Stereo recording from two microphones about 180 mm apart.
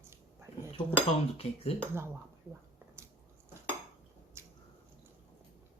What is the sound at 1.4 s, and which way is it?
Speech, 35° left (ahead or behind).